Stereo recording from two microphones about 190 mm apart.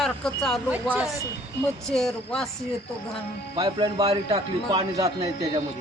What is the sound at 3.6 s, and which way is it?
A man's voice, 25° right (ahead or behind).